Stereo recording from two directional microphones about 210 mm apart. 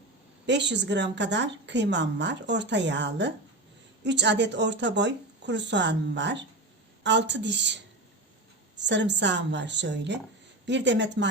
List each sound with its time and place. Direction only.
0.4 s a woman's voice: 55° right (ahead or behind)